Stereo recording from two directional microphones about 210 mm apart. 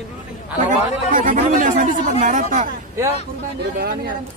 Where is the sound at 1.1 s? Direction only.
40° right (ahead or behind).